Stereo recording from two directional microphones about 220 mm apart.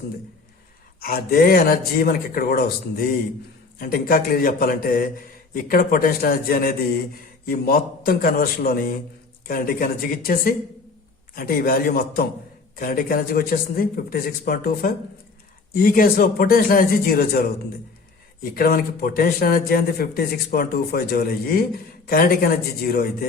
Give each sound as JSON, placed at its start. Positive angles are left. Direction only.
{"t": 0.9, "sound": "speech", "side_deg": 40}
{"t": 18.5, "sound": "speech", "side_deg": 40}